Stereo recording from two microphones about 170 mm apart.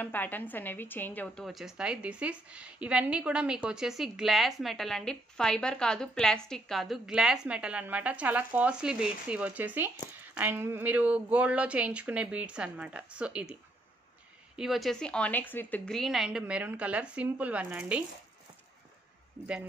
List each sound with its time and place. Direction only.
0.0 s a woman's voice: 10° left (ahead or behind); by 13.6 s 5° right (ahead or behind)
14.6 s a woman's voice: centre (ahead or behind)